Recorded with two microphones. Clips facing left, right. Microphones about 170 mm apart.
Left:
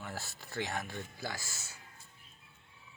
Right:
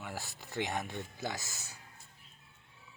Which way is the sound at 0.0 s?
15° right (ahead or behind).